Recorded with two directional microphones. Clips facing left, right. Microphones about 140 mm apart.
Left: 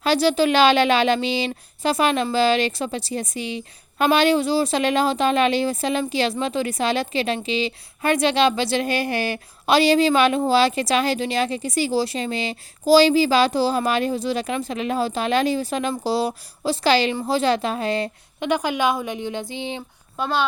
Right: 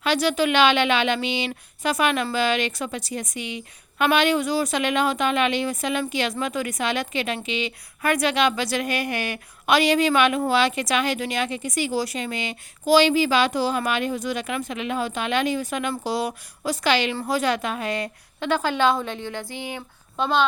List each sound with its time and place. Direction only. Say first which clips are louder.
0.0 s a woman's voice: left 3 dB; 35° left (ahead or behind)
18.3 s a woman's voice: left 1 dB; 15° left (ahead or behind)
20.1 s a child's voice: right 1 dB; 5° left (ahead or behind)